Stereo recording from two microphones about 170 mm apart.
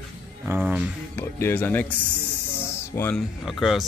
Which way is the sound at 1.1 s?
10° left (ahead or behind).